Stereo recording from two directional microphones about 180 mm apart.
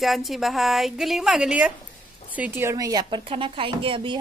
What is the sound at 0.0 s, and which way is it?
A child's voice, centre (ahead or behind).